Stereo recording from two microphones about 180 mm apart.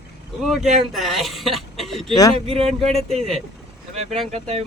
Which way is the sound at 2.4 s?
35° right (ahead or behind).